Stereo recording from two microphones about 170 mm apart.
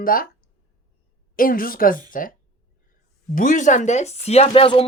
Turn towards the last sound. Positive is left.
turn(degrees=30)  # may be behind; listen again after turning